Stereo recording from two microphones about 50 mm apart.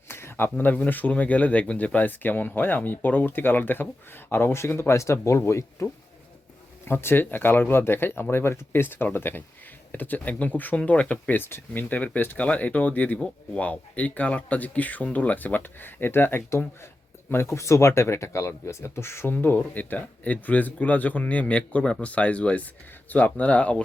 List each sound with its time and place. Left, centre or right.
0.1 s a sound: left
0.6 s speech: left
6.8 s speech: left
11.3 s speech: left
17.2 s speech: left
19.3 s speech: left